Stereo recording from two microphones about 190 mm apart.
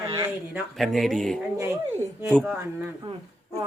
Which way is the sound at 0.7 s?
Centre (ahead or behind).